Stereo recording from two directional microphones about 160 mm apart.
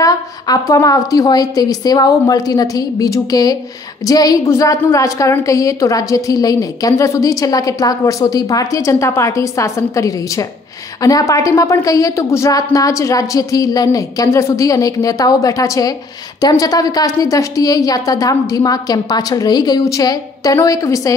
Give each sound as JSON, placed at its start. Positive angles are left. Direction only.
{"t": 0.0, "sound": "a woman's voice", "side_deg": 20}